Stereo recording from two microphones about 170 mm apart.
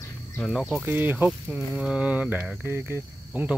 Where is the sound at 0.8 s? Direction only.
10° right (ahead or behind).